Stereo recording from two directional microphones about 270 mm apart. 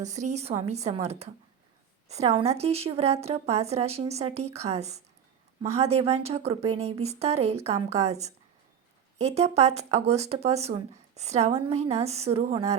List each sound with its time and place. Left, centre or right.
0.0 s speech: right